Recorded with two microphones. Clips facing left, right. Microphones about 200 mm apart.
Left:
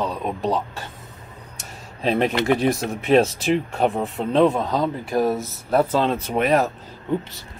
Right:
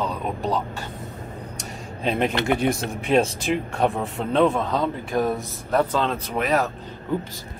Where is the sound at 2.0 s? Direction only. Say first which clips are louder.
Left 3 dB; centre (ahead or behind).